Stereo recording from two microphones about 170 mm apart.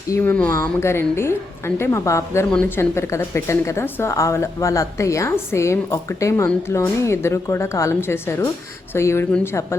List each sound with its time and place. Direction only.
0.1 s a woman's voice: 10° left (ahead or behind)